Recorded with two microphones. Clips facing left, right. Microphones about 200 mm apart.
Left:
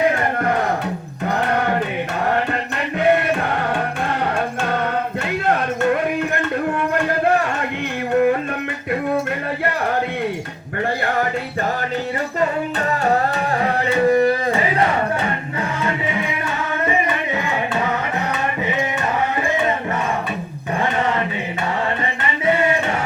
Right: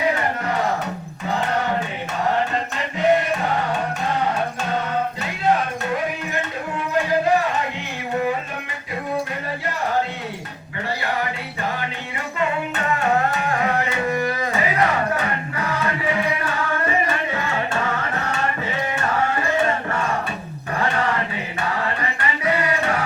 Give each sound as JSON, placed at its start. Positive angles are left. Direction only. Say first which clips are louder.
{"t": 1.5, "sound": "music", "louder": "left 3 dB", "side_deg": 60}
{"t": 5.2, "sound": "a sound", "louder": "left 1 dB", "side_deg": 60}
{"t": 13.6, "sound": "music", "louder": "left 7 dB", "side_deg": 30}
{"t": 22.4, "sound": "music", "louder": "left 4 dB", "side_deg": 25}